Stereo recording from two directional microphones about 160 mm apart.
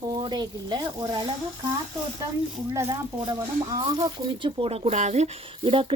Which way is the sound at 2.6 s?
20° right (ahead or behind).